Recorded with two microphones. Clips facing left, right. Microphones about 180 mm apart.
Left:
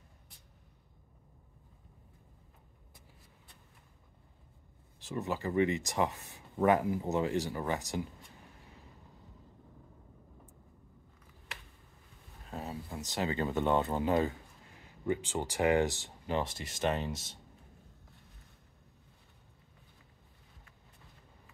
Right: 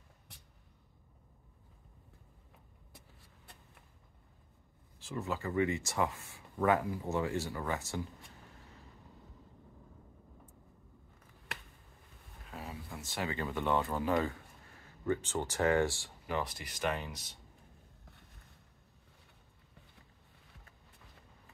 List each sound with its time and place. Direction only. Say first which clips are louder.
5.0 s speech: left 2 dB; 20° left (ahead or behind)
12.4 s speech: left 4 dB; 30° left (ahead or behind)